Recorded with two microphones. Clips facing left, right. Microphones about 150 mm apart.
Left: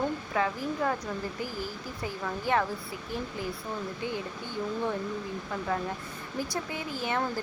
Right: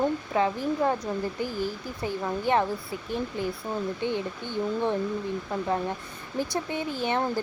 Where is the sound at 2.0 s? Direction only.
25° right (ahead or behind).